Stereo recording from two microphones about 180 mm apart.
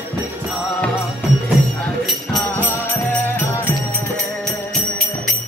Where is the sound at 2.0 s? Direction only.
Centre (ahead or behind).